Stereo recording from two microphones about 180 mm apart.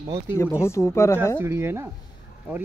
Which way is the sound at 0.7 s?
15° left (ahead or behind).